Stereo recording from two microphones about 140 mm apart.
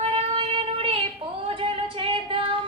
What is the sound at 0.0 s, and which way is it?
Child singing, 40° right (ahead or behind).